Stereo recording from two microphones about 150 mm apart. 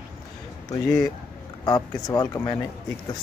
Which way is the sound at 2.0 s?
25° left (ahead or behind).